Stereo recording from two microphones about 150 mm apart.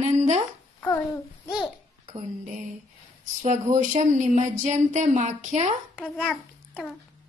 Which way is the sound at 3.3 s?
50° right (ahead or behind).